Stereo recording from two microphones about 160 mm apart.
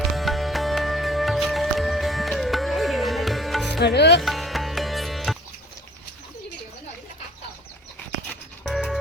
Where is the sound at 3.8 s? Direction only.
90° left.